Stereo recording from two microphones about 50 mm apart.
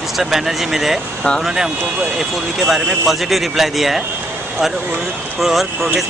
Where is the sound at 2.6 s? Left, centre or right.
Centre.